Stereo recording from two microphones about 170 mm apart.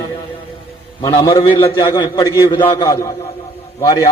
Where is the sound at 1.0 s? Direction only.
20° left (ahead or behind).